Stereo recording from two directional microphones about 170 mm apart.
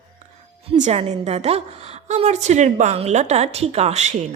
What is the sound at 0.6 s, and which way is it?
Music, 35° right (ahead or behind).